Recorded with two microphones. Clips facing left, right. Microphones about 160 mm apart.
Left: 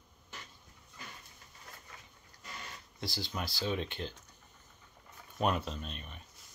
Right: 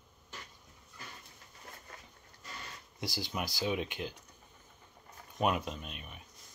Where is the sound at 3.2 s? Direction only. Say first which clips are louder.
Right 2 dB; 20° right (ahead or behind).